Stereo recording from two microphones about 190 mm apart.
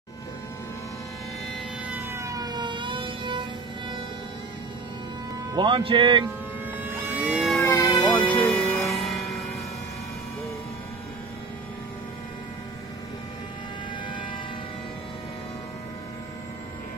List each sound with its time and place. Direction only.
1.9 s emergency vehicle: 10° right (ahead or behind)
5.5 s speech: 25° right (ahead or behind)
6.8 s vehicle: 5° right (ahead or behind)
7.6 s vehicle: 15° left (ahead or behind)
8.3 s music: 10° left (ahead or behind)
8.8 s music: centre (ahead or behind)